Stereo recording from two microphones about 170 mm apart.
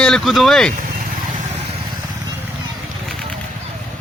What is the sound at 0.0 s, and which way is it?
Speech, centre (ahead or behind).